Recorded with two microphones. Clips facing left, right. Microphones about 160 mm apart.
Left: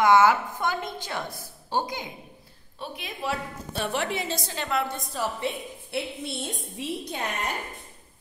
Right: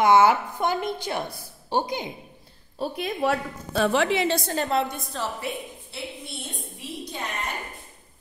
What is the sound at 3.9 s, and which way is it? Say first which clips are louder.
Speech: right 4 dB; 90° right.